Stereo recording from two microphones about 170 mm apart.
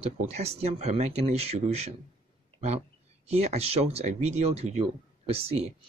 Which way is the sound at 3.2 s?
40° right (ahead or behind).